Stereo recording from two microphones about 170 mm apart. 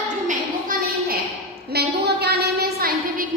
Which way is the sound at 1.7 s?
75° right (ahead or behind).